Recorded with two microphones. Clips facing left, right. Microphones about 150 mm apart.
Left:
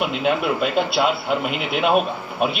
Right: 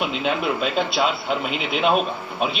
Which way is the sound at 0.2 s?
5° left (ahead or behind).